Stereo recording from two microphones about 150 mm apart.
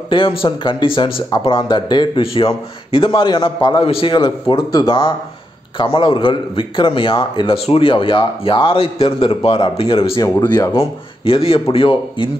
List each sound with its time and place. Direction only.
0.4 s speech: 35° left (ahead or behind)
10.5 s speech: 20° left (ahead or behind)
11.2 s speech: 40° left (ahead or behind)